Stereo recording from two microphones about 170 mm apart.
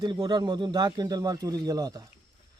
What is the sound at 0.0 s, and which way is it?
Speech, 25° right (ahead or behind).